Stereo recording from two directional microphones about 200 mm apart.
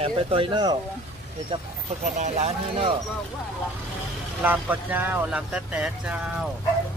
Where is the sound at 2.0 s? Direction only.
35° right (ahead or behind).